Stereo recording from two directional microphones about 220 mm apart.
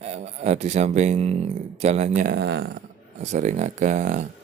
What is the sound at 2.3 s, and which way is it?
Speech, 50° right (ahead or behind).